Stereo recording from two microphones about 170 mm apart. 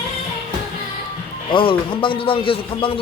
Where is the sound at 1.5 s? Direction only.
30° left (ahead or behind).